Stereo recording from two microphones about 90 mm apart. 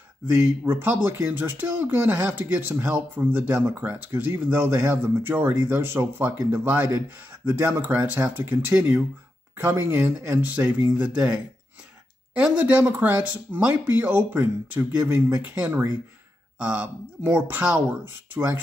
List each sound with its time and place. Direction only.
0.7 s speech: 20° right (ahead or behind)
14.8 s speech: 30° right (ahead or behind)
15.4 s speech: 15° right (ahead or behind)